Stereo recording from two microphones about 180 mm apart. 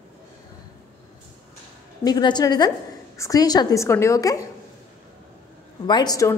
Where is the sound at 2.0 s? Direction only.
25° left (ahead or behind).